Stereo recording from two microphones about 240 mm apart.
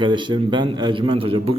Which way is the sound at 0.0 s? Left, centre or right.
Centre.